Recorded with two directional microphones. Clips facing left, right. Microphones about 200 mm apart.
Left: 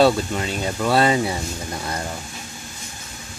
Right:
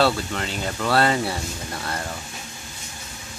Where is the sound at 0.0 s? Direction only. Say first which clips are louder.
Left 4 dB; 15° left (ahead or behind).